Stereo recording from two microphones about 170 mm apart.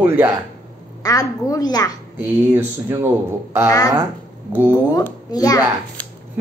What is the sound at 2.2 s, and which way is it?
Speech, 15° right (ahead or behind).